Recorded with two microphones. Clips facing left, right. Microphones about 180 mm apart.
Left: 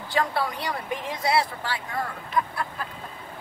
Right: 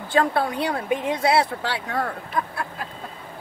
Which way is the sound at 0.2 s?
55° right (ahead or behind).